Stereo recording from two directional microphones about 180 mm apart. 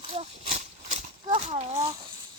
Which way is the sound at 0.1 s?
35° right (ahead or behind).